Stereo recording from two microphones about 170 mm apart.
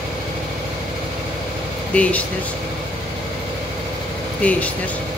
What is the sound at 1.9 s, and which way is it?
Speech, 10° left (ahead or behind).